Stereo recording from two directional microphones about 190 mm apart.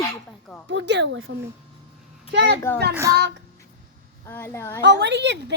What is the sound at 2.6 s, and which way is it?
Speech, 10° left (ahead or behind).